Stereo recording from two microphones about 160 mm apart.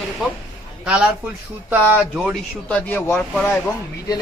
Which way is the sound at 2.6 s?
10° left (ahead or behind).